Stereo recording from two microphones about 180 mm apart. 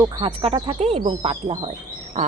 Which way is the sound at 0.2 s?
25° right (ahead or behind).